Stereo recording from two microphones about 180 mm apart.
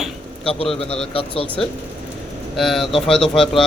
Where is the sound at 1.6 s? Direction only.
5° left (ahead or behind).